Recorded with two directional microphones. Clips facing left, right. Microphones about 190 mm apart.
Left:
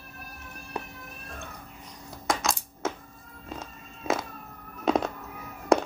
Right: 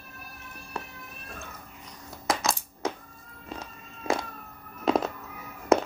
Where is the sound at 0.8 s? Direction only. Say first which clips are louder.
Left 2 dB; 15° left (ahead or behind).